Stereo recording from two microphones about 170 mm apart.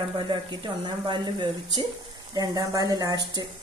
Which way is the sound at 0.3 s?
30° right (ahead or behind).